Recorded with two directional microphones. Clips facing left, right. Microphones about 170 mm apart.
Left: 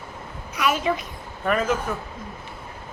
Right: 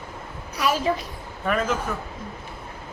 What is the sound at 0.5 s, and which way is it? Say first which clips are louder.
Speech: even; 35° right (ahead or behind).